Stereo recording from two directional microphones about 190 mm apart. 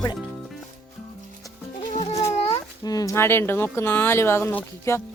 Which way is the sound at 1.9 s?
35° left (ahead or behind).